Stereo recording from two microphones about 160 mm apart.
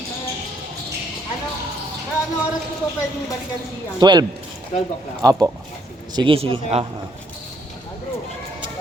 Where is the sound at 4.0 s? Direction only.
25° right (ahead or behind).